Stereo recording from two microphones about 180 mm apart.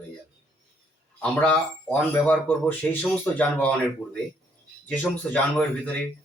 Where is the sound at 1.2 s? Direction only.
10° left (ahead or behind).